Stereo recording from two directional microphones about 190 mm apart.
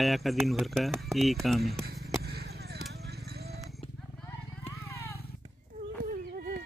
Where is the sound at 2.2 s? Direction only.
55° right (ahead or behind).